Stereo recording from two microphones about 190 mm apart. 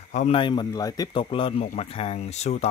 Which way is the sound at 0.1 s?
40° left (ahead or behind).